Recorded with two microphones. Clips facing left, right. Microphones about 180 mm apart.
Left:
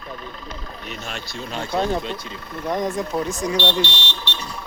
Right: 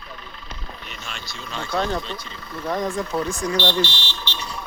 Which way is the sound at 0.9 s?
45° left (ahead or behind).